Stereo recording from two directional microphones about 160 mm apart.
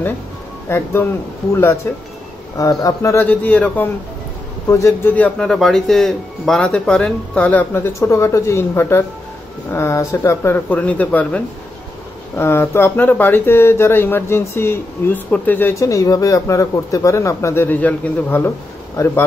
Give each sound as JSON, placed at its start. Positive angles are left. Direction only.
{"t": 0.7, "sound": "speech", "side_deg": 15}